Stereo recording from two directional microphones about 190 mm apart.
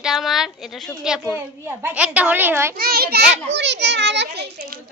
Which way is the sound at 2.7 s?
55° right (ahead or behind).